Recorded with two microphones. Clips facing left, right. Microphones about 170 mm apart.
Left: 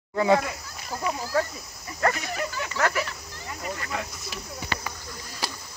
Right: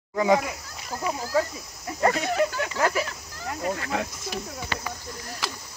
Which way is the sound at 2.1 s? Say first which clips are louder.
Right 8 dB; 70° right (ahead or behind).